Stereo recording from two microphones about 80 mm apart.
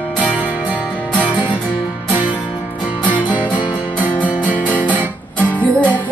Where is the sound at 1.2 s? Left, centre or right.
Centre.